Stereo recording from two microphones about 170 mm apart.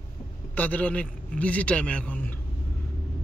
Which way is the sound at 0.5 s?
10° left (ahead or behind).